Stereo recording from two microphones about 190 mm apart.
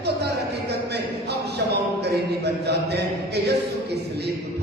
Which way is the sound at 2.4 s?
60° right (ahead or behind).